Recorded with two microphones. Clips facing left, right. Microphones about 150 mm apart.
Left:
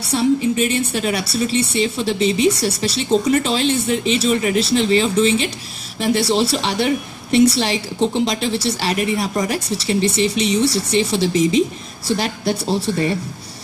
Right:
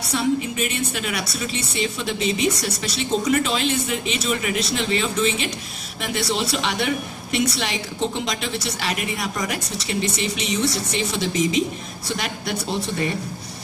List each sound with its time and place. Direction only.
0.1 s a woman's voice: 35° left (ahead or behind)